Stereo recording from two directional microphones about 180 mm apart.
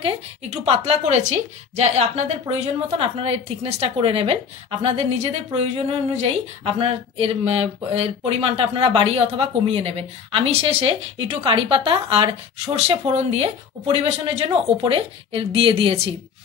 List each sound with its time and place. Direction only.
0.0 s speech: 35° right (ahead or behind)
6.8 s speech: 35° right (ahead or behind)